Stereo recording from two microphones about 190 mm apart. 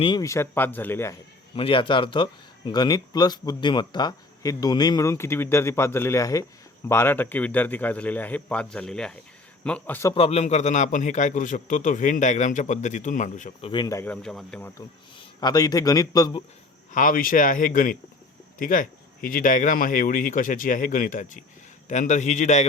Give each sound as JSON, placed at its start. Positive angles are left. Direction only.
{"t": 0.0, "sound": "a man's voice", "side_deg": 20}
{"t": 1.5, "sound": "a man's voice", "side_deg": 30}
{"t": 10.2, "sound": "a man's voice", "side_deg": 35}
{"t": 13.7, "sound": "a man's voice", "side_deg": 20}
{"t": 15.4, "sound": "speech", "side_deg": 20}
{"t": 16.9, "sound": "a man's voice", "side_deg": 45}